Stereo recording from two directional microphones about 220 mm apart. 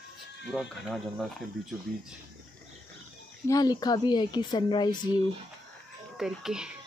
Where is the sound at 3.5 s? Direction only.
15° left (ahead or behind).